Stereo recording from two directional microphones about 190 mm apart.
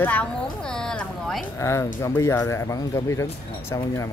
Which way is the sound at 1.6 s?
15° left (ahead or behind).